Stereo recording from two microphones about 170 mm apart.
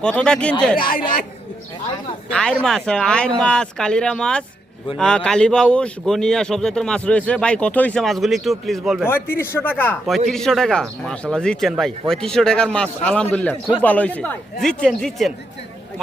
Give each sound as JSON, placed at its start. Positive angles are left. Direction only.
{"t": 0.0, "sound": "speech", "side_deg": 5}
{"t": 0.8, "sound": "speech", "side_deg": 55}
{"t": 2.3, "sound": "speech", "side_deg": 5}
{"t": 9.0, "sound": "speech", "side_deg": 15}